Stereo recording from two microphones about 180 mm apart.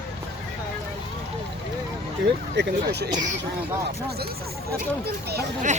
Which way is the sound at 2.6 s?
65° right (ahead or behind).